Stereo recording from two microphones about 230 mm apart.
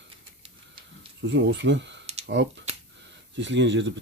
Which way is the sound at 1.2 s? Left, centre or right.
Right.